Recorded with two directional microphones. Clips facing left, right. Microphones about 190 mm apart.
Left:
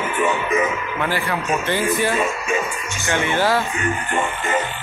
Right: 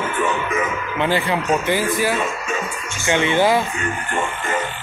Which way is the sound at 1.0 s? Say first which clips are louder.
Right 4 dB; 20° right (ahead or behind).